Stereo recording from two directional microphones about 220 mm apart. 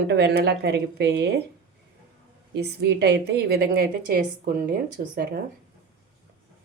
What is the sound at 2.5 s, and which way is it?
A woman's voice, 50° right (ahead or behind).